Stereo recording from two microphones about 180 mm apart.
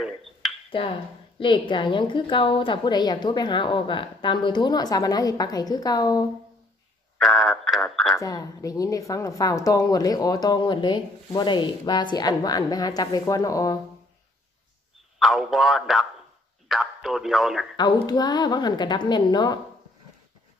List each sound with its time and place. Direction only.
0.7 s a woman's voice: 30° left (ahead or behind)
7.2 s speech: centre (ahead or behind)
8.2 s a woman's voice: 20° left (ahead or behind)
15.1 s a man's voice: centre (ahead or behind)
18.0 s a woman's voice: 20° left (ahead or behind)